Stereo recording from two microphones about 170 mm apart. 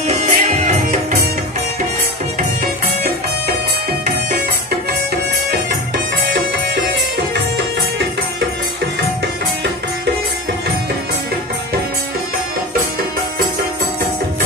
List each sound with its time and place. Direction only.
0.2 s music: 45° right (ahead or behind)